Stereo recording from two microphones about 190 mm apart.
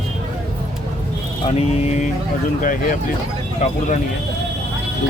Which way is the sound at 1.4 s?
35° left (ahead or behind).